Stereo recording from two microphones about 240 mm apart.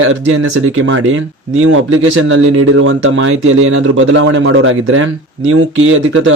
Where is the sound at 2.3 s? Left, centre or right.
Right.